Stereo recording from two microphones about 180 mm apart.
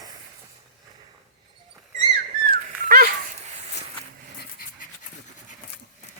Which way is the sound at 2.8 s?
50° right (ahead or behind).